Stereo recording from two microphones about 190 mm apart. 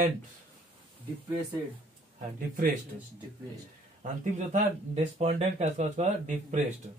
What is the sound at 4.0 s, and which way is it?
Speech, 35° right (ahead or behind).